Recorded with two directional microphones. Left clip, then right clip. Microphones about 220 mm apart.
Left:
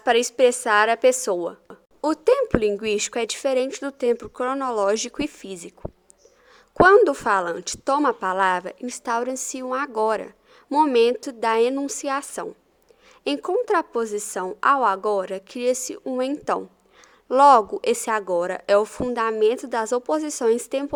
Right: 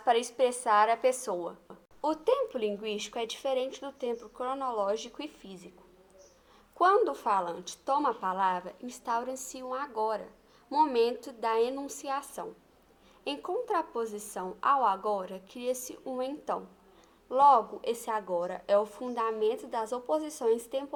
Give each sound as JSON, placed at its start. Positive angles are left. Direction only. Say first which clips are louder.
{"t": 0.0, "sound": "a woman's voice", "louder": "left 9 dB", "side_deg": 45}
{"t": 6.7, "sound": "a woman's voice", "louder": "left 11 dB", "side_deg": 45}